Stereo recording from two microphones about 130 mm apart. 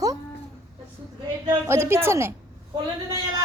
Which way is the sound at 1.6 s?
20° right (ahead or behind).